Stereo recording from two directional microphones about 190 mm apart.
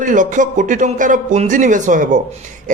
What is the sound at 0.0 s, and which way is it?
Speech, 45° right (ahead or behind).